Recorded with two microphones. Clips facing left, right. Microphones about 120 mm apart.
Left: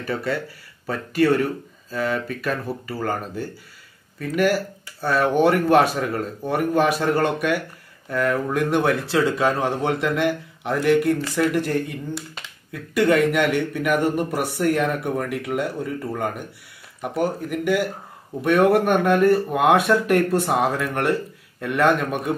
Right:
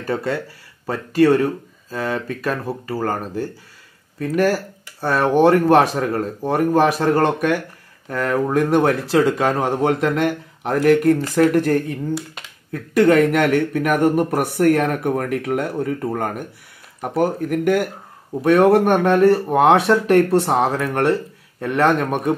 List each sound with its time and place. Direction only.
0.0 s speech: 35° right (ahead or behind)
12.1 s speech: centre (ahead or behind)
12.7 s speech: 45° right (ahead or behind)
18.4 s speech: 35° right (ahead or behind)